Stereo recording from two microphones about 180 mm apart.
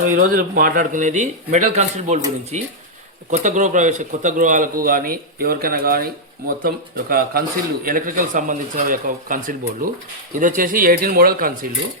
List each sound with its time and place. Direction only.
0.0 s a man's voice: 50° right (ahead or behind)